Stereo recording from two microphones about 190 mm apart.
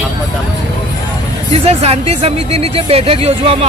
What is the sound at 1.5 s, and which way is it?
Speech, 30° right (ahead or behind).